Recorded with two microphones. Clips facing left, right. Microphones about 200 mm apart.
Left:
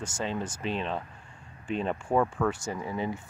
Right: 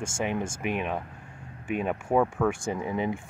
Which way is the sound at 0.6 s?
15° right (ahead or behind).